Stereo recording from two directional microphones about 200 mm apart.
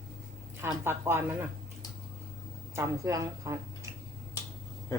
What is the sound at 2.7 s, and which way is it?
Speech, 15° right (ahead or behind).